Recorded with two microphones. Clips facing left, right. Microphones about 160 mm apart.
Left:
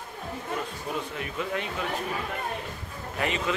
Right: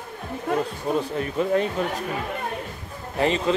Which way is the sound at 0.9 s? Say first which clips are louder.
Right 8 dB; 35° right (ahead or behind).